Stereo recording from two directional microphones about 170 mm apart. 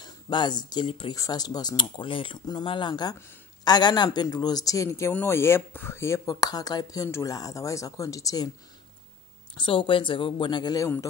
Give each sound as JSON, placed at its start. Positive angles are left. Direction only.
{"t": 0.0, "sound": "speech", "side_deg": 25}
{"t": 9.6, "sound": "speech", "side_deg": 30}